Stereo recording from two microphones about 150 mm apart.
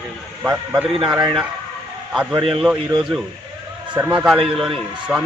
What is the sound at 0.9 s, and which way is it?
A man's voice, 30° right (ahead or behind).